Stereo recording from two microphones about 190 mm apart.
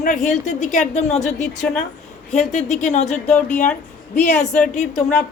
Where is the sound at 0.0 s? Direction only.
40° left (ahead or behind).